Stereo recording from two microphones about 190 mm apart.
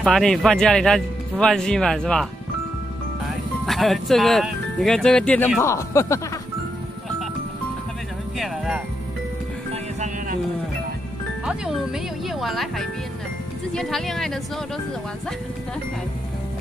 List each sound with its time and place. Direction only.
0.0 s speech: centre (ahead or behind)
3.6 s speech: centre (ahead or behind)
8.4 s speech: centre (ahead or behind)
9.7 s music: 40° right (ahead or behind)
11.4 s speech: 5° right (ahead or behind)